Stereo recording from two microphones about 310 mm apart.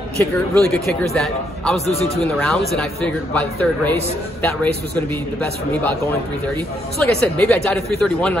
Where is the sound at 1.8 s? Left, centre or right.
Centre.